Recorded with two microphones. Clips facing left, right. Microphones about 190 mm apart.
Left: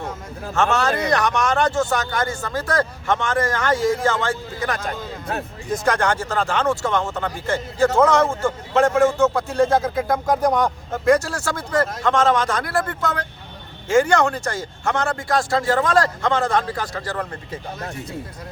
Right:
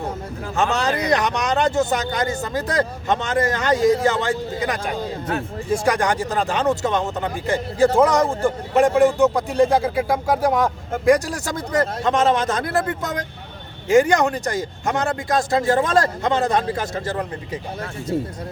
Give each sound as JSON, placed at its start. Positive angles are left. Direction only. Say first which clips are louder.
{"t": 0.5, "sound": "speech", "louder": "left 1 dB", "side_deg": -15}